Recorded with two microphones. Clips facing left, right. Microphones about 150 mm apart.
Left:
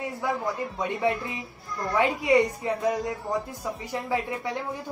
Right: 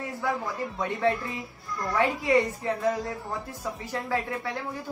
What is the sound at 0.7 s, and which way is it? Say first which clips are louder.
A woman's voice: right 2 dB; 20° left (ahead or behind).